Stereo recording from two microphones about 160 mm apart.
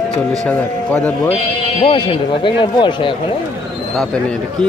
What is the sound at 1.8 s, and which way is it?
Speech, 30° left (ahead or behind).